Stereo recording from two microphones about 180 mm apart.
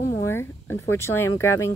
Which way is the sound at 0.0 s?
15° left (ahead or behind).